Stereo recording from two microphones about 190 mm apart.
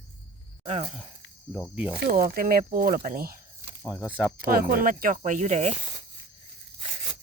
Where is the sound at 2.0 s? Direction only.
50° right (ahead or behind).